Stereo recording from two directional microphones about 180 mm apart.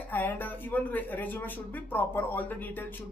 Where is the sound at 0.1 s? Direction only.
10° left (ahead or behind).